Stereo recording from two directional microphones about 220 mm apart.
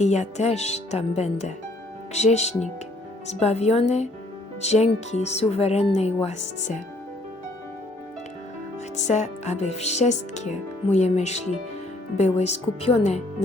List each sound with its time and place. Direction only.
0.0 s speech: 30° left (ahead or behind)
9.0 s speech: 30° left (ahead or behind)